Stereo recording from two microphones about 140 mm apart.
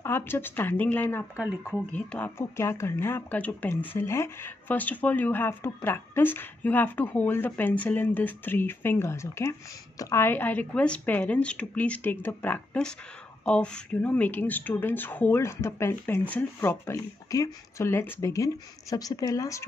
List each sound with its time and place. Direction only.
0.0 s speech: 15° left (ahead or behind)
1.3 s speech: 10° right (ahead or behind)
1.7 s speech: 10° left (ahead or behind)